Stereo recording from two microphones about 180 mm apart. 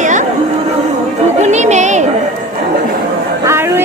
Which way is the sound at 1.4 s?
40° right (ahead or behind).